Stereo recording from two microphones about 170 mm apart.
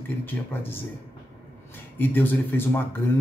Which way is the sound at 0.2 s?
10° left (ahead or behind).